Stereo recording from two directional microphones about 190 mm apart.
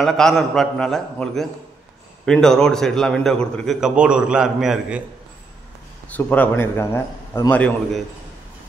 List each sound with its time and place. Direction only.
0.0 s a man's voice: centre (ahead or behind)
6.0 s a man's voice: 10° left (ahead or behind)